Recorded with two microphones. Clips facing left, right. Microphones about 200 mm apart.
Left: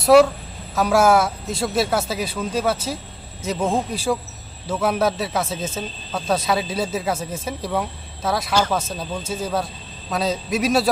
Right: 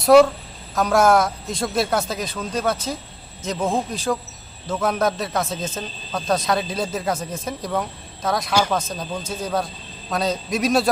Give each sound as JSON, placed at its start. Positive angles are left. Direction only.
{"t": 0.0, "sound": "a woman's voice", "side_deg": 5}